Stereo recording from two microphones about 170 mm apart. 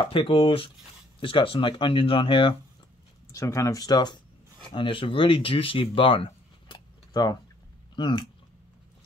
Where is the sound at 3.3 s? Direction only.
20° left (ahead or behind).